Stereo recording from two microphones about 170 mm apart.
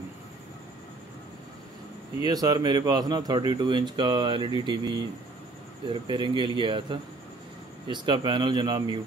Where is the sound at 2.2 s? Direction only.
25° right (ahead or behind).